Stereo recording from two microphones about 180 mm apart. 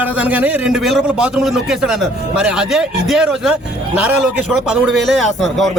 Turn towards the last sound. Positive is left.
turn(degrees=0)  # may be behind; listen again after turning